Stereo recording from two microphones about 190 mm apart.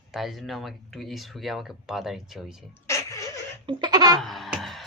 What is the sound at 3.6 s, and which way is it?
Laughter, 25° right (ahead or behind).